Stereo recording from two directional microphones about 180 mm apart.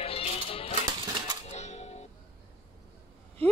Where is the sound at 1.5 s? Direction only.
40° left (ahead or behind).